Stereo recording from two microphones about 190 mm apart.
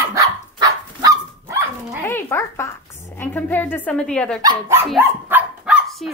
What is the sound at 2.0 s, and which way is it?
Speech, 15° left (ahead or behind).